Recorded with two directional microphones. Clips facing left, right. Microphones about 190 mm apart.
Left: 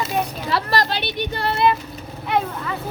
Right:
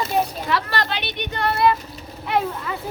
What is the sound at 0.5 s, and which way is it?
Speech, 40° left (ahead or behind).